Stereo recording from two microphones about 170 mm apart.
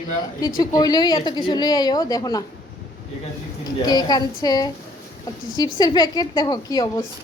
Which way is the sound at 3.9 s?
25° left (ahead or behind).